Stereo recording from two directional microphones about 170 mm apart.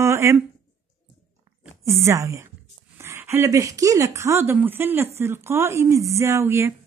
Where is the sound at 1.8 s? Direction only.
15° right (ahead or behind).